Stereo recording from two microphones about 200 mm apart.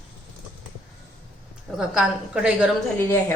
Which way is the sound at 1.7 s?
5° right (ahead or behind).